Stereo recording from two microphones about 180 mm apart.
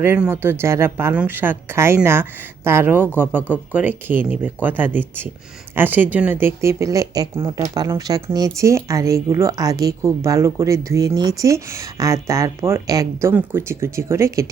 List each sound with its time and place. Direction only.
0.0 s speech: 15° right (ahead or behind)